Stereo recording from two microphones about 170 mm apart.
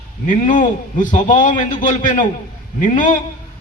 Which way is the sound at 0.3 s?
50° left (ahead or behind).